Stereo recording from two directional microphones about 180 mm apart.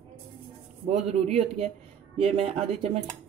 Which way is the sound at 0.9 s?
35° right (ahead or behind).